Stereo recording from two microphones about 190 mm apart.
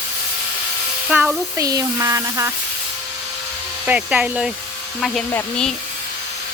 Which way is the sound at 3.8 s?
5° right (ahead or behind).